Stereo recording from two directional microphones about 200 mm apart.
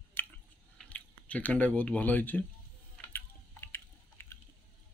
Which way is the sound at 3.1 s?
10° left (ahead or behind).